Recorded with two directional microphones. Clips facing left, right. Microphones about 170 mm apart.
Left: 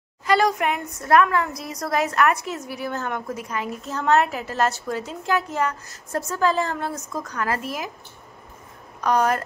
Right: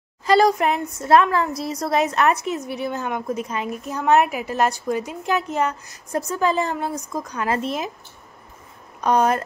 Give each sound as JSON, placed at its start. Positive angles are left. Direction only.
{"t": 0.2, "sound": "a woman's voice", "side_deg": -35}
{"t": 9.0, "sound": "a woman's voice", "side_deg": -20}